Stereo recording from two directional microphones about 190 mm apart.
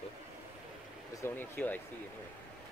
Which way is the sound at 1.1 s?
10° left (ahead or behind).